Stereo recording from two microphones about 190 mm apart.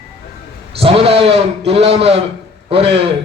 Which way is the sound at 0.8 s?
30° right (ahead or behind).